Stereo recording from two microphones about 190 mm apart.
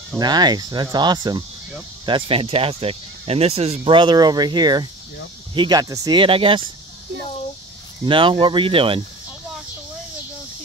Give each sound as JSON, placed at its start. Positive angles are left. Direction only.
{"t": 0.2, "sound": "speech", "side_deg": -20}
{"t": 8.0, "sound": "speech", "side_deg": -25}